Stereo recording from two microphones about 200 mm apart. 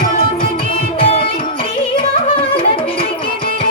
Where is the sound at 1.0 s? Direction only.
25° left (ahead or behind).